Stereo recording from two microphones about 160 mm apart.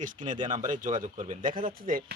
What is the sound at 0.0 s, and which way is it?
A man's voice, 55° right (ahead or behind).